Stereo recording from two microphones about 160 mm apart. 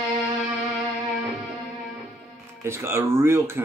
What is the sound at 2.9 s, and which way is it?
Speech, 15° right (ahead or behind).